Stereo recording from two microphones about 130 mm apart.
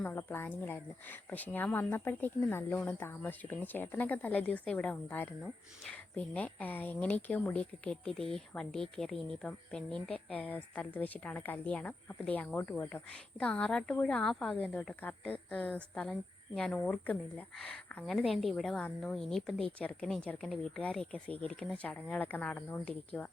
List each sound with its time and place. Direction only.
0.0 s a woman's voice: 15° left (ahead or behind)